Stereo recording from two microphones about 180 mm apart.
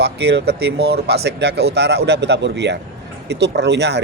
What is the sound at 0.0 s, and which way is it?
Speech, 70° right (ahead or behind).